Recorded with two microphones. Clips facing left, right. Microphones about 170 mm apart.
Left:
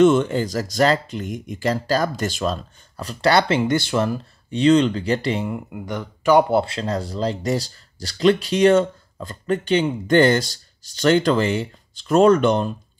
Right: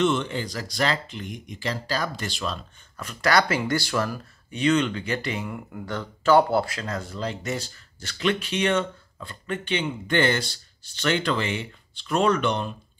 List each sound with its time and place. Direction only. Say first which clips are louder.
0.0 s speech: left 8 dB; 45° left (ahead or behind); by 5.6 s 30° left (ahead or behind)
5.7 s speech: left 3 dB; 15° left (ahead or behind); by 12.7 s 40° left (ahead or behind)